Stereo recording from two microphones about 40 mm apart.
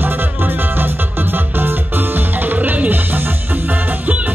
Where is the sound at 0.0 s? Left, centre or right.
Right.